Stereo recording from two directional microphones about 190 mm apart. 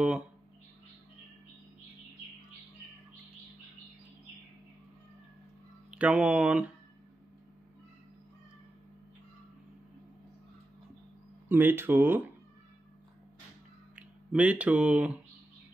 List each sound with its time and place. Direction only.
0.0 s speech: 5° right (ahead or behind)
5.9 s speech: 5° right (ahead or behind)
11.4 s speech: 10° right (ahead or behind)
13.9 s speech: 5° right (ahead or behind)